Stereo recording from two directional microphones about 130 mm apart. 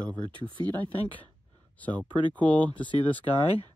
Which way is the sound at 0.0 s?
10° left (ahead or behind).